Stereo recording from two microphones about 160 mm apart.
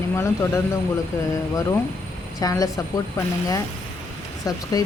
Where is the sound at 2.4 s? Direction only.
20° left (ahead or behind).